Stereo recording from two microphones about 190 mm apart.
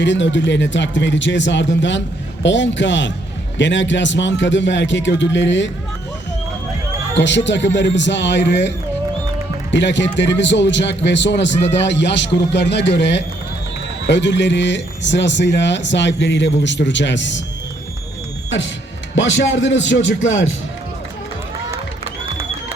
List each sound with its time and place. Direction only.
0.0 s speech: 70° left (ahead or behind)
7.2 s speech: 70° left (ahead or behind)
9.7 s speech: 70° left (ahead or behind)
19.1 s speech: 80° left